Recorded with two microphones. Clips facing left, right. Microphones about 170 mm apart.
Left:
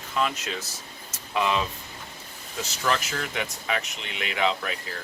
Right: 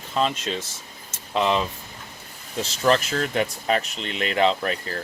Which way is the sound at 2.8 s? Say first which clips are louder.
Right 7 dB; 35° right (ahead or behind).